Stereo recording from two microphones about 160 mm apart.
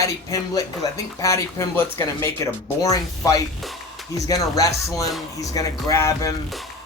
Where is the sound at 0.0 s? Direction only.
20° left (ahead or behind).